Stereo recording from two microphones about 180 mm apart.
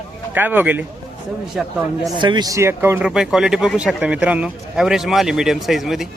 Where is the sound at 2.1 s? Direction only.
25° right (ahead or behind).